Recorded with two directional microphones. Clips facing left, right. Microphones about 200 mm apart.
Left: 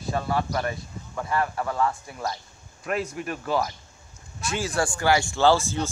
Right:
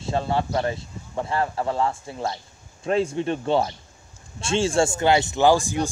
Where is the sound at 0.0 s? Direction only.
25° right (ahead or behind).